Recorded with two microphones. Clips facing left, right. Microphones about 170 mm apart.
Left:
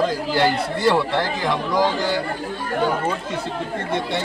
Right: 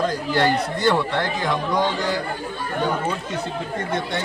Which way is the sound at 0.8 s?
5° left (ahead or behind).